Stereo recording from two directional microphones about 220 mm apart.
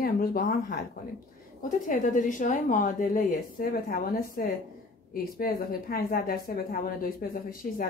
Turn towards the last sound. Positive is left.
turn(degrees=40)  # may be behind; listen again after turning